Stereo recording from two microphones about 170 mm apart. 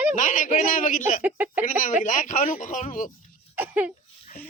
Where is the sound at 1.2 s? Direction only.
10° right (ahead or behind).